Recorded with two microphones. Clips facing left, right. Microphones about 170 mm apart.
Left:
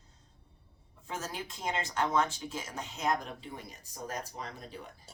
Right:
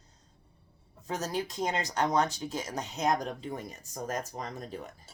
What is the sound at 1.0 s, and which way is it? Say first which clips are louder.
Speech: right 6 dB; 40° right (ahead or behind).